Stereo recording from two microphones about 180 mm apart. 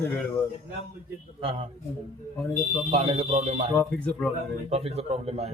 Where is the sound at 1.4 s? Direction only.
30° right (ahead or behind).